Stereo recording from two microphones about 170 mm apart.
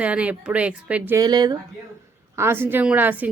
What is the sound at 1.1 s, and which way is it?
A woman's voice, 25° right (ahead or behind).